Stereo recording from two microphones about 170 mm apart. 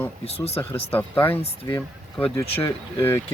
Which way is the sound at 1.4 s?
25° left (ahead or behind).